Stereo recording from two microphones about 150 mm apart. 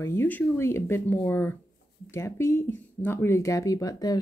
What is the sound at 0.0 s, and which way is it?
Speech, 15° left (ahead or behind).